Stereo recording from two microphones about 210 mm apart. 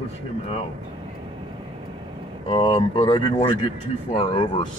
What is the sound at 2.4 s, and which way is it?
Speech, 25° left (ahead or behind).